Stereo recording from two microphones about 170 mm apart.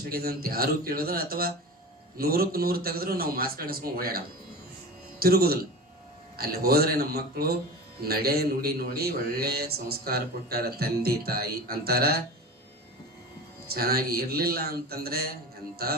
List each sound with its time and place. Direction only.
0.1 s a man's voice: 60° right (ahead or behind)
5.2 s a man's voice: 65° right (ahead or behind)
13.7 s a man's voice: 65° right (ahead or behind)